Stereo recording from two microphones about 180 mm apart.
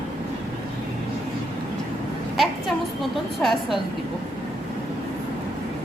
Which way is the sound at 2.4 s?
Centre (ahead or behind).